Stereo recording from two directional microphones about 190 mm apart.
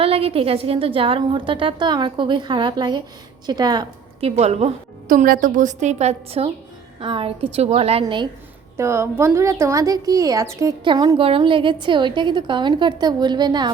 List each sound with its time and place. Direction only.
0.0 s a woman's voice: 30° right (ahead or behind)
4.4 s a woman's voice: 35° right (ahead or behind)
8.8 s a woman's voice: 15° right (ahead or behind)